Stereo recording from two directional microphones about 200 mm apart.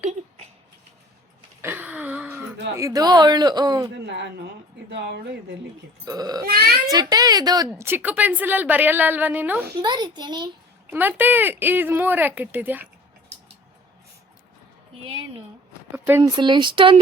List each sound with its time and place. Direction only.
1.6 s a sound: 10° right (ahead or behind)
2.7 s speech: 15° right (ahead or behind)
3.9 s a woman's voice: 60° right (ahead or behind)
6.1 s speech: 20° right (ahead or behind)
6.4 s a child's voice: 50° right (ahead or behind)
6.8 s speech: 20° right (ahead or behind)
9.8 s speech: 20° right (ahead or behind)
10.9 s speech: 10° right (ahead or behind)
16.0 s speech: 15° right (ahead or behind)